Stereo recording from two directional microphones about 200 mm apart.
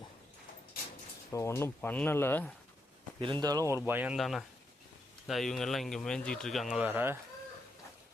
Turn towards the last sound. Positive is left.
turn(degrees=-10)  # may be behind; listen again after turning